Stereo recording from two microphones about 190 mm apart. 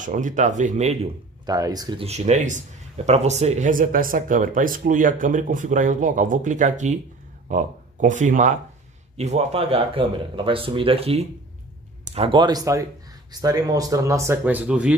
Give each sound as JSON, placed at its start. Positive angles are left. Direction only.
{"t": 0.0, "sound": "speech", "side_deg": -40}
{"t": 1.4, "sound": "speech", "side_deg": -20}
{"t": 2.0, "sound": "speech", "side_deg": -35}